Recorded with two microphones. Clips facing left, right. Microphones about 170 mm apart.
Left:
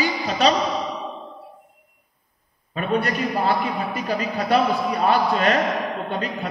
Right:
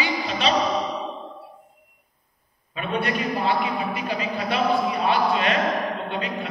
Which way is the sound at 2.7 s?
40° left (ahead or behind).